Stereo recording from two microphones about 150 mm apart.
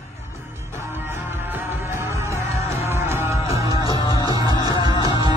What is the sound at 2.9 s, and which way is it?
Music, 15° right (ahead or behind).